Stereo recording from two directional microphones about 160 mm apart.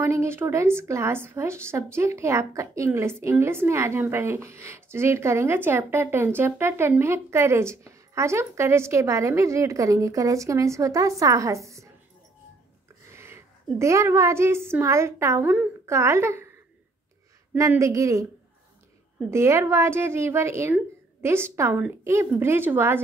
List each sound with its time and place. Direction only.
0.0 s a woman's voice: 15° right (ahead or behind)
13.1 s a woman's voice: 15° right (ahead or behind)
17.6 s speech: 20° right (ahead or behind)
19.3 s a woman's voice: 15° right (ahead or behind)